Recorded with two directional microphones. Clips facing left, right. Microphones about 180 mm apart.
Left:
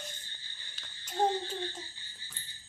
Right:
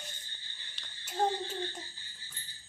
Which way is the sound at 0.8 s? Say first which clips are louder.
Left 1 dB; centre (ahead or behind).